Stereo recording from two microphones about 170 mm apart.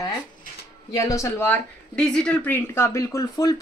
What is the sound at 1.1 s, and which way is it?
Speech, 15° left (ahead or behind).